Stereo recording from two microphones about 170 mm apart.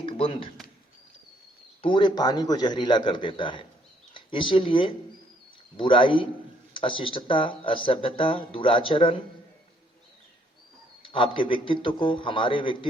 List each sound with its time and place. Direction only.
0.0 s speech: 35° left (ahead or behind)
1.8 s a man's voice: 30° left (ahead or behind)
11.0 s a man's voice: 30° left (ahead or behind)